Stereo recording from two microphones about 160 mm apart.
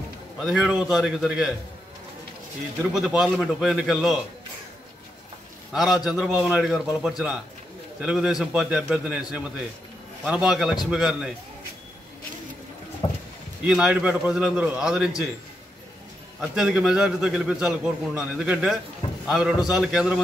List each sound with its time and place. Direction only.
0.4 s a man's voice: centre (ahead or behind)
3.0 s a man's voice: 5° right (ahead or behind)
5.7 s a man's voice: centre (ahead or behind)
13.0 s clip-clop: 30° left (ahead or behind)
13.7 s a man's voice: 5° right (ahead or behind)
16.3 s a man's voice: 5° right (ahead or behind)